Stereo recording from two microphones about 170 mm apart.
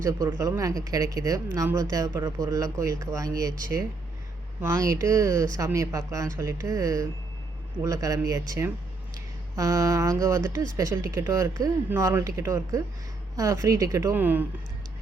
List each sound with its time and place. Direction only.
0.0 s speech: 20° right (ahead or behind)
4.6 s speech: 15° right (ahead or behind)